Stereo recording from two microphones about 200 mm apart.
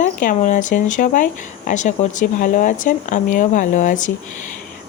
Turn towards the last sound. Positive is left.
turn(degrees=40)  # may be behind; listen again after turning